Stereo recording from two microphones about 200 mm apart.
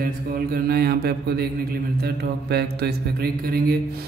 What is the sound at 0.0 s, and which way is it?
Mantra, 50° right (ahead or behind).